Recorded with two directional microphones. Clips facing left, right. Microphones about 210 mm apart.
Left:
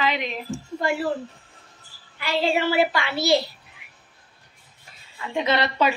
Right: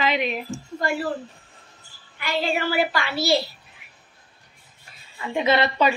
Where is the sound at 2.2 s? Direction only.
30° left (ahead or behind).